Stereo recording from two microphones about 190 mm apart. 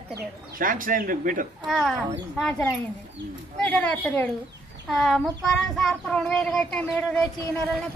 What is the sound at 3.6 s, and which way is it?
Speech, 5° left (ahead or behind).